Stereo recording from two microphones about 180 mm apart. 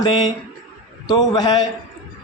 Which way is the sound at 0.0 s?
25° left (ahead or behind).